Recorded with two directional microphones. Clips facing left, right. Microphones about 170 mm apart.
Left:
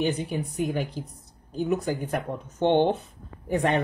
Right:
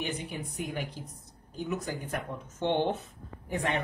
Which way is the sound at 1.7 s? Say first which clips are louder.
Left 7 dB; 40° left (ahead or behind).